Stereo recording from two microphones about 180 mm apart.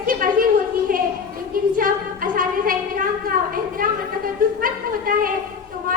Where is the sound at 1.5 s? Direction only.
50° right (ahead or behind).